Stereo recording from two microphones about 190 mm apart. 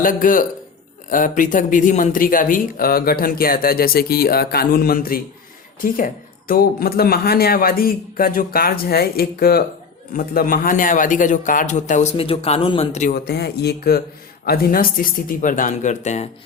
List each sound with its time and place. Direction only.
0.0 s a man's voice: 45° left (ahead or behind)
6.5 s a man's voice: 50° left (ahead or behind)
13.1 s a man's voice: 60° left (ahead or behind); by 16.2 s 40° left (ahead or behind)